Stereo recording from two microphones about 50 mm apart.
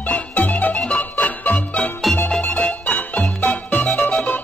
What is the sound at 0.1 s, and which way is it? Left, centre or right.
Music, left.